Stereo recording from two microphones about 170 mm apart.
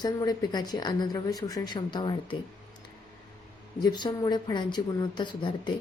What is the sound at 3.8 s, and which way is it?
A woman's voice, 25° left (ahead or behind).